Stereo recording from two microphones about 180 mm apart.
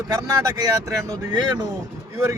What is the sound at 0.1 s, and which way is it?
Speech, 20° right (ahead or behind).